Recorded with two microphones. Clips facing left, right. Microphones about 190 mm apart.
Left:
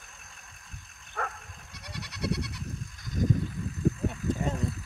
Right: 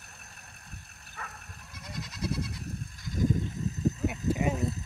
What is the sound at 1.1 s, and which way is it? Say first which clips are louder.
Goat: left 9 dB; 65° left (ahead or behind).